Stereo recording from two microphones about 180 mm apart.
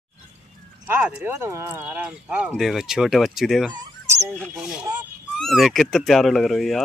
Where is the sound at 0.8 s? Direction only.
10° right (ahead or behind).